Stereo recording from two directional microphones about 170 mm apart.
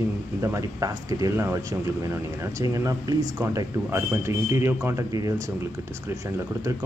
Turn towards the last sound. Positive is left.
turn(degrees=-20)  # may be behind; listen again after turning